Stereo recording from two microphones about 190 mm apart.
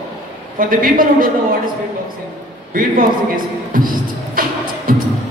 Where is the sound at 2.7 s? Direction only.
45° right (ahead or behind).